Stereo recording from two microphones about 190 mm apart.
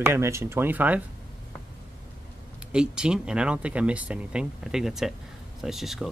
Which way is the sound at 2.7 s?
5° right (ahead or behind).